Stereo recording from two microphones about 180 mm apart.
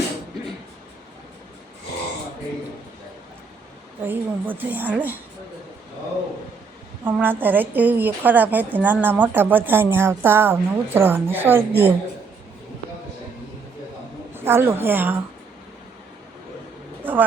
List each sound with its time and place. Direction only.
4.0 s a woman's voice: 10° right (ahead or behind)
7.0 s a woman's voice: 10° right (ahead or behind)
14.3 s a woman's voice: 15° right (ahead or behind)
17.0 s a sound: 10° right (ahead or behind)